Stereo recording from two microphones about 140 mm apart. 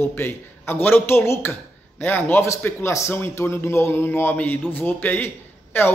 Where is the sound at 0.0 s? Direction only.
15° left (ahead or behind).